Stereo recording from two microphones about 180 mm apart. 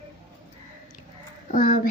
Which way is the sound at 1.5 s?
50° left (ahead or behind).